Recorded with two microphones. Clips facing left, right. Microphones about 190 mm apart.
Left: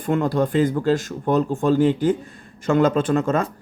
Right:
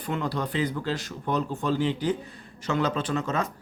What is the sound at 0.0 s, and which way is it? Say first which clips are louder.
Speech: left 9 dB; 50° left (ahead or behind).